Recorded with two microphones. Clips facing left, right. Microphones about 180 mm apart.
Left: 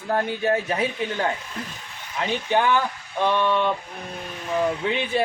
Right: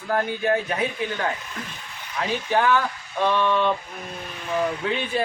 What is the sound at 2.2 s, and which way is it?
Speech, 15° left (ahead or behind).